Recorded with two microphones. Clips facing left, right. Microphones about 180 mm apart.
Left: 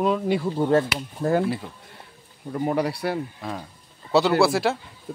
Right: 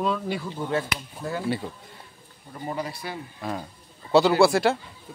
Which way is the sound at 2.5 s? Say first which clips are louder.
Left 8 dB; 70° left (ahead or behind).